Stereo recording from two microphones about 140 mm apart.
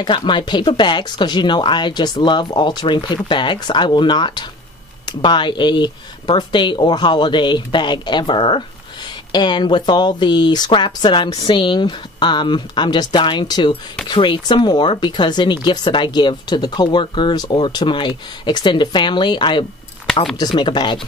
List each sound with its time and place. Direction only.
0.0 s speech: 35° left (ahead or behind)
20.1 s a sound: 5° left (ahead or behind)
20.5 s speech: 35° left (ahead or behind)